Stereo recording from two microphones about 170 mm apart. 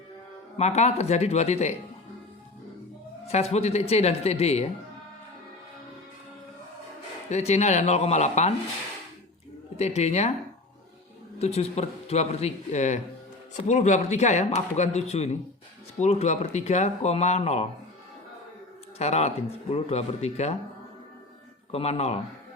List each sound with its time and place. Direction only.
0.5 s speech: 40° left (ahead or behind)
3.2 s speech: 40° left (ahead or behind)
7.3 s speech: 40° left (ahead or behind)
9.7 s speech: 40° left (ahead or behind)
11.3 s a man's voice: 35° left (ahead or behind)
18.9 s speech: 40° left (ahead or behind)
21.7 s speech: 35° left (ahead or behind)